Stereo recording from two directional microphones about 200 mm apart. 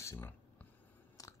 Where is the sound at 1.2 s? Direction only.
15° left (ahead or behind).